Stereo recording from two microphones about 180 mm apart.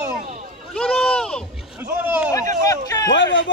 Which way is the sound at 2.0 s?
10° right (ahead or behind).